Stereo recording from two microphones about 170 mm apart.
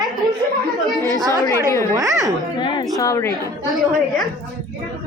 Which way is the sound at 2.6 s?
25° left (ahead or behind).